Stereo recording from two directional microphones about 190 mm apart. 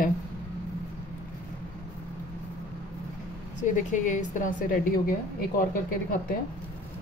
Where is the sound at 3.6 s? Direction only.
40° left (ahead or behind).